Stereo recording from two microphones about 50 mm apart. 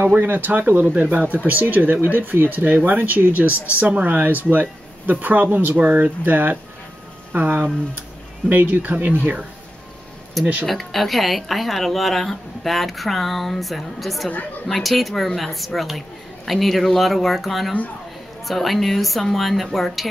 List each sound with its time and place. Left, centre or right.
0.1 s speech: right
10.7 s speech: centre